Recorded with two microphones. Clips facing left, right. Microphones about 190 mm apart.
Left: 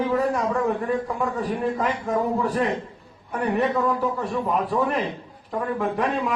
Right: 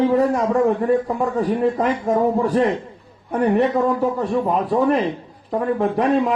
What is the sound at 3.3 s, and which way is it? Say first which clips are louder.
A man's voice: right 5 dB; 25° right (ahead or behind).